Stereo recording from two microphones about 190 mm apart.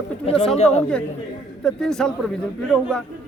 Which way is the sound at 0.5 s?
35° left (ahead or behind).